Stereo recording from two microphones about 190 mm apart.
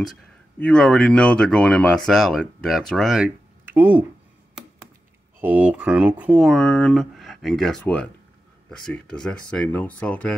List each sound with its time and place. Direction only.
0.6 s speech: 5° left (ahead or behind)
5.4 s speech: 10° right (ahead or behind)